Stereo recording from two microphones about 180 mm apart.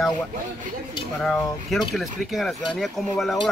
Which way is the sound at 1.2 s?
5° left (ahead or behind).